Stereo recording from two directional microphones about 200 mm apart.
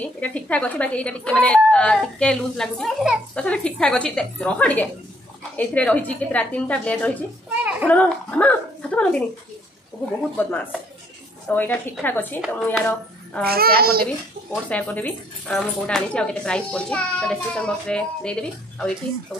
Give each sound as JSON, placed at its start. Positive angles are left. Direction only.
{"t": 0.2, "sound": "a woman's voice", "side_deg": 5}
{"t": 10.3, "sound": "a woman's voice", "side_deg": 10}
{"t": 13.4, "sound": "a child's voice", "side_deg": -50}
{"t": 14.5, "sound": "a woman's voice", "side_deg": 5}